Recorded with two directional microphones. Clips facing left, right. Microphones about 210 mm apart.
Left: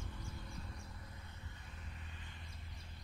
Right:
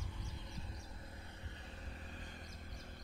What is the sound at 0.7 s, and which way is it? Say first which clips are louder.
Vehicle: right 1 dB; 30° right (ahead or behind).